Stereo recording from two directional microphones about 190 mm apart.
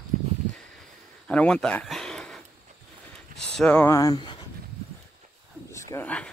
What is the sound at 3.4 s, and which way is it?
Speech, 5° left (ahead or behind).